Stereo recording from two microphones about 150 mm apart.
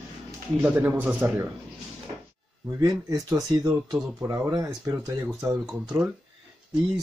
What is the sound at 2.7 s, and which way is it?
Speech, 20° right (ahead or behind).